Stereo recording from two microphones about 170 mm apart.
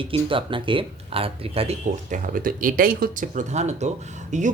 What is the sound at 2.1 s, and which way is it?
Speech, 55° right (ahead or behind).